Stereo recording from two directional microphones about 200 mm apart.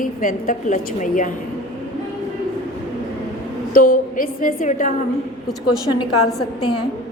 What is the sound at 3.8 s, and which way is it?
A woman's voice, 45° left (ahead or behind).